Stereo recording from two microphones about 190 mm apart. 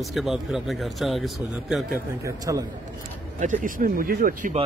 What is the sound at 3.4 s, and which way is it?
Speech, 40° right (ahead or behind).